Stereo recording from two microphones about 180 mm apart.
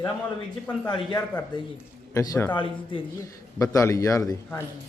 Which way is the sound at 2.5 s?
25° left (ahead or behind).